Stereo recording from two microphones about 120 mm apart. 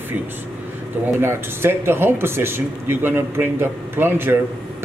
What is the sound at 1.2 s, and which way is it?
Speech, 20° right (ahead or behind).